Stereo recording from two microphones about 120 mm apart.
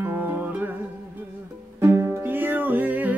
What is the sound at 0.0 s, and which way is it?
Music, 15° right (ahead or behind).